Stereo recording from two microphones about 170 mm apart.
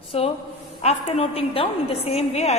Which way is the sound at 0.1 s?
35° left (ahead or behind).